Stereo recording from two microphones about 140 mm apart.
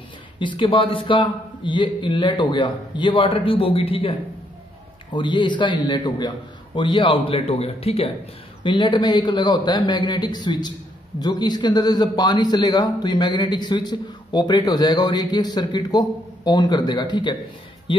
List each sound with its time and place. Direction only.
0.4 s a man's voice: 35° left (ahead or behind)
5.1 s a man's voice: 35° left (ahead or behind)
8.6 s a man's voice: 35° left (ahead or behind)